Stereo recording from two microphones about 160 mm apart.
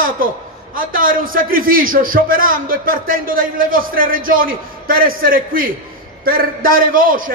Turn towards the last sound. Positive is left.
turn(degrees=-60)  # may be behind; listen again after turning